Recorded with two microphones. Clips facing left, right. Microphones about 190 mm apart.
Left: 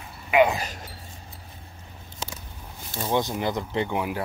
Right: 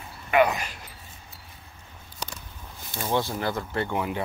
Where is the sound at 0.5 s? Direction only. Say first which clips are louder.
Left 2 dB; 40° left (ahead or behind).